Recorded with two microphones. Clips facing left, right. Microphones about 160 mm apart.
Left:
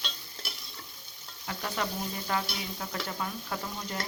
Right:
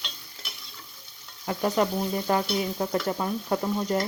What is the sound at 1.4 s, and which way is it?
Stir, 40° right (ahead or behind).